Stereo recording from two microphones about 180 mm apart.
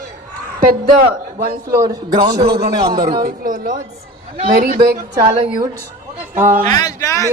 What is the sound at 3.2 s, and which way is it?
Speech, 50° right (ahead or behind).